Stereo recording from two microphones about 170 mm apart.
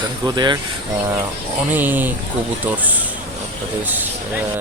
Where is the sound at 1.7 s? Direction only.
10° right (ahead or behind).